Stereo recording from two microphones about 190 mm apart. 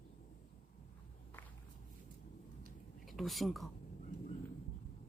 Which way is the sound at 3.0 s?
Centre (ahead or behind).